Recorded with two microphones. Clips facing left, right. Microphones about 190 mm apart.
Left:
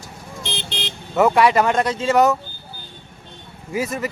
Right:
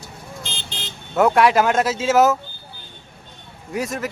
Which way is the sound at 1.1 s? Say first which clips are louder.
Even; centre (ahead or behind).